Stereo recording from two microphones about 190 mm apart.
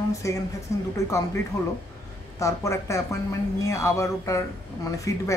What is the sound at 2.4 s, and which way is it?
Speech, 15° left (ahead or behind).